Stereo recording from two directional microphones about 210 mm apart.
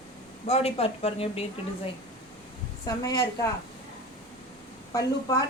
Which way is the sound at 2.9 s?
15° left (ahead or behind).